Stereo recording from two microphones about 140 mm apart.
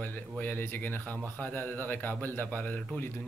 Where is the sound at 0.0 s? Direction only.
10° left (ahead or behind).